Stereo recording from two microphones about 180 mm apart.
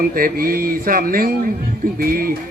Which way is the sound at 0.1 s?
50° right (ahead or behind).